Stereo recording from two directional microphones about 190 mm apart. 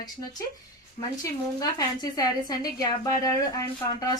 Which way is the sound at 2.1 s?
20° left (ahead or behind).